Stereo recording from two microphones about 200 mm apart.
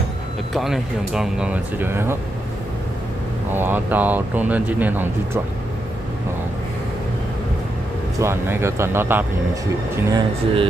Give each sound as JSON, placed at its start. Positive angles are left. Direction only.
{"t": 0.5, "sound": "speech", "side_deg": 0}
{"t": 3.5, "sound": "speech", "side_deg": -10}
{"t": 8.2, "sound": "speech", "side_deg": -15}
{"t": 10.1, "sound": "speech", "side_deg": -25}